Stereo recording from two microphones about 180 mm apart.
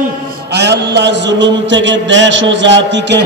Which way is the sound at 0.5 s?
70° right (ahead or behind).